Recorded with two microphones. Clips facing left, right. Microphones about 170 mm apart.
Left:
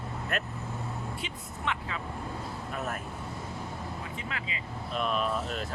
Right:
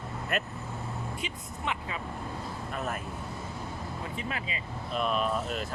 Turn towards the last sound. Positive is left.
turn(degrees=0)  # may be behind; listen again after turning